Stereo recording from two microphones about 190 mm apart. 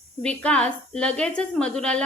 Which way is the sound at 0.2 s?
5° left (ahead or behind).